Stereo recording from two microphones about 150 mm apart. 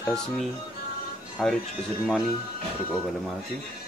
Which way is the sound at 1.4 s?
Centre (ahead or behind).